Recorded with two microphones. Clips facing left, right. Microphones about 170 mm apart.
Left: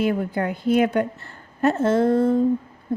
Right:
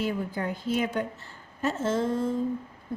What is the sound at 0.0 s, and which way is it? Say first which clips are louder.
A woman's voice: left 7 dB; 60° left (ahead or behind).